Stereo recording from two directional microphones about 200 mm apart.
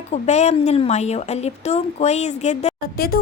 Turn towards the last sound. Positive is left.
turn(degrees=50)  # may be behind; listen again after turning